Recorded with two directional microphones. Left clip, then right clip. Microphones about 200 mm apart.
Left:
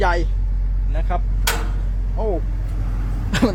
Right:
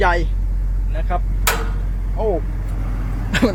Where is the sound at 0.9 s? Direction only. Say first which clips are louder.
Right 2 dB; 30° left (ahead or behind).